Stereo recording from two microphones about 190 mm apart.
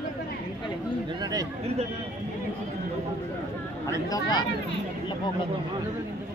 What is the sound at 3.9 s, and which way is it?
Speech, 20° left (ahead or behind).